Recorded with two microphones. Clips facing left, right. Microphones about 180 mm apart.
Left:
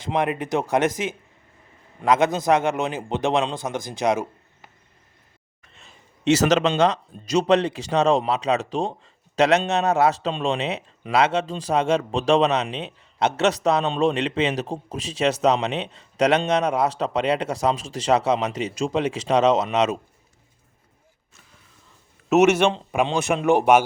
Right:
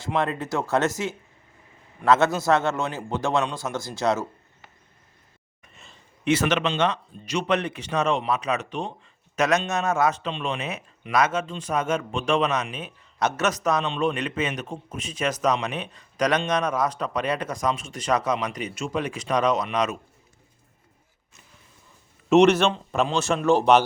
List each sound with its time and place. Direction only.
0.0 s a man's voice: 20° left (ahead or behind)
6.3 s speech: 40° left (ahead or behind)
22.3 s a man's voice: 10° left (ahead or behind)